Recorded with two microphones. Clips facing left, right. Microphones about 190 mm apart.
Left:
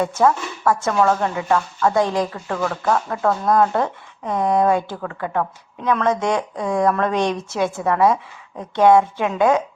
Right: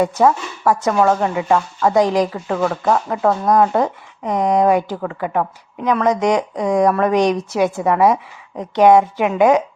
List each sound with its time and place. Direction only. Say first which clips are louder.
0.2 s speech: right 2 dB; 15° right (ahead or behind)